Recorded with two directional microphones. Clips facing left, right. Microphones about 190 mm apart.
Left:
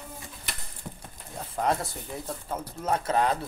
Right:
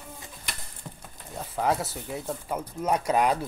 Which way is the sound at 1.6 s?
5° right (ahead or behind).